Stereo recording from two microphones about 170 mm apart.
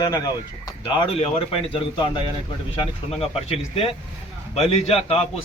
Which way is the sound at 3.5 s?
35° left (ahead or behind).